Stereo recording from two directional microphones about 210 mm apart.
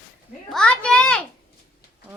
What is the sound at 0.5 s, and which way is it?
Speech, 5° left (ahead or behind).